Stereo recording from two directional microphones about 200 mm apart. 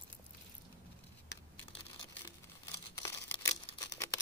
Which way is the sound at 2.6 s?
15° left (ahead or behind).